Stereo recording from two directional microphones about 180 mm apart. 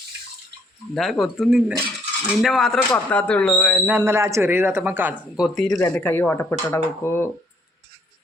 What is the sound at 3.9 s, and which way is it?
Speech, 10° right (ahead or behind).